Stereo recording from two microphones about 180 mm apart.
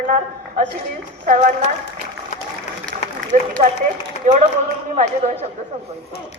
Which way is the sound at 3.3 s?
45° right (ahead or behind).